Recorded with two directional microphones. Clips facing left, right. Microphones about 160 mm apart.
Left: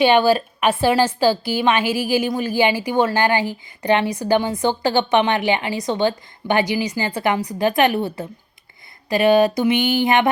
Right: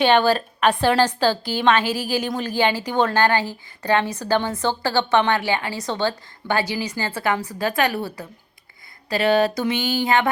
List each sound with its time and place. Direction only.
0.0 s a woman's voice: 10° left (ahead or behind)